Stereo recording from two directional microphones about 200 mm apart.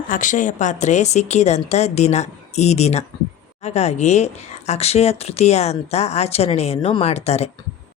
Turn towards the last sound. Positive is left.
turn(degrees=30)  # may be behind; listen again after turning